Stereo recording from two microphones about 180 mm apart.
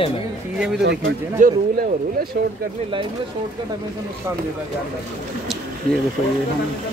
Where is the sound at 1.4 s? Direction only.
45° right (ahead or behind).